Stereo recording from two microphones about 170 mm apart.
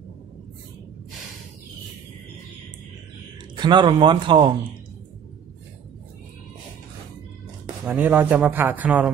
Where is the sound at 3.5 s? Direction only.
25° right (ahead or behind).